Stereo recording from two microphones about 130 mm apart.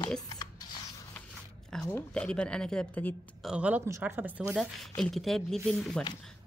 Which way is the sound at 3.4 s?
5° right (ahead or behind).